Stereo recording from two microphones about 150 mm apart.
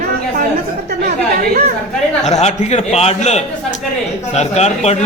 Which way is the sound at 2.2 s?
50° left (ahead or behind).